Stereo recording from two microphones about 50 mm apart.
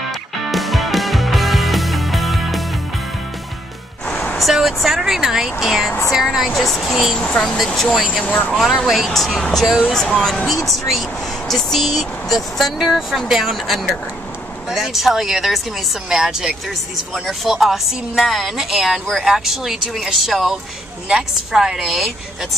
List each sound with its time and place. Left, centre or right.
0.5 s music: centre
4.1 s vehicle: left
4.4 s a woman's voice: centre
6.5 s a woman's voice: centre
7.2 s speech: centre
7.5 s a woman's voice: centre
21.1 s a woman's voice: centre